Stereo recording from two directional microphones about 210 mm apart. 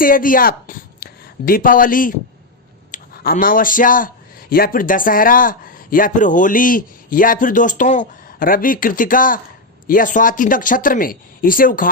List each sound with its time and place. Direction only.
0.0 s a man's voice: 40° left (ahead or behind)